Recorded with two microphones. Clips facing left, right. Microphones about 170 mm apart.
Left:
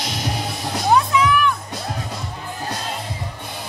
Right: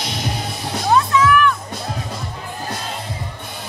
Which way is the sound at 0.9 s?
15° left (ahead or behind).